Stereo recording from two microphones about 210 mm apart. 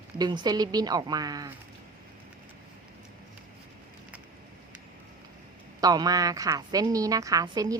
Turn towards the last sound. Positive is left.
turn(degrees=-20)  # may be behind; listen again after turning